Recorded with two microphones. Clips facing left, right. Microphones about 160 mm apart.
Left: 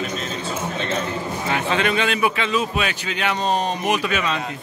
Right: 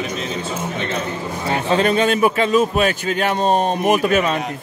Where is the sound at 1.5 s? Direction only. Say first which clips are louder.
Right 5 dB; 35° right (ahead or behind).